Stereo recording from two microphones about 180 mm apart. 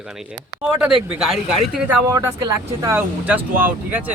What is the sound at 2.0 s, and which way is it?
Speech, 20° right (ahead or behind).